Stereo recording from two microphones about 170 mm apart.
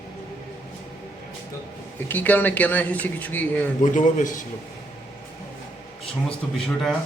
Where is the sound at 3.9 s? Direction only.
50° left (ahead or behind).